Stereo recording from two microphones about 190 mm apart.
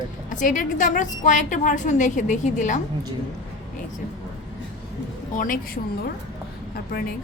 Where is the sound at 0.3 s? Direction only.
45° left (ahead or behind).